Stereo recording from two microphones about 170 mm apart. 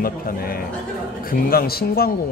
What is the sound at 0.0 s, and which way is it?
Speech, 60° left (ahead or behind).